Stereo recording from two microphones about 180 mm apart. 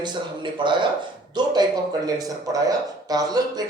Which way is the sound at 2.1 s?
20° right (ahead or behind).